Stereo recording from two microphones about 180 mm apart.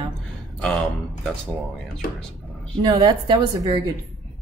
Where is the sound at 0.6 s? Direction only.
5° left (ahead or behind).